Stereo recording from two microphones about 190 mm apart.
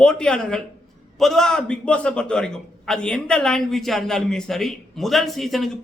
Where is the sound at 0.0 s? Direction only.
5° left (ahead or behind).